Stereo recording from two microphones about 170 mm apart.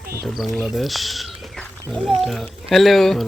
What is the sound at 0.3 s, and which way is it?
Speech, centre (ahead or behind).